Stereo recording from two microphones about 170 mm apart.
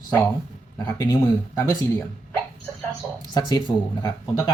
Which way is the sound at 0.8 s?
25° left (ahead or behind).